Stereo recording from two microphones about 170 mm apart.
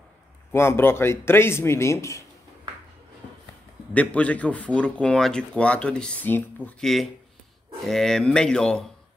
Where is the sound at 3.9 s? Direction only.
10° left (ahead or behind).